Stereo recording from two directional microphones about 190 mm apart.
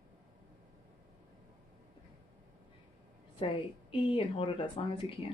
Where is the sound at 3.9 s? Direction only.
25° left (ahead or behind).